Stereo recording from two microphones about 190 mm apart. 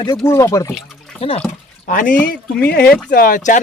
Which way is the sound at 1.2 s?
30° left (ahead or behind).